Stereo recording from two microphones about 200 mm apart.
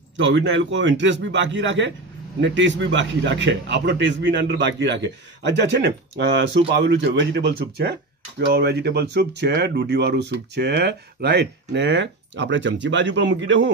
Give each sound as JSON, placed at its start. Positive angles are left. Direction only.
{"t": 0.2, "sound": "a man's voice", "side_deg": -65}